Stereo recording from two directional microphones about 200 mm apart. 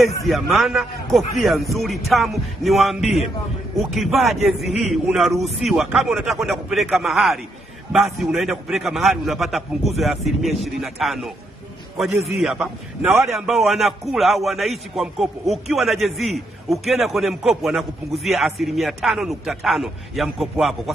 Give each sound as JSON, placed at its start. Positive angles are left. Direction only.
{"t": 0.0, "sound": "a man's voice", "side_deg": 0}
{"t": 12.4, "sound": "a man's voice", "side_deg": 0}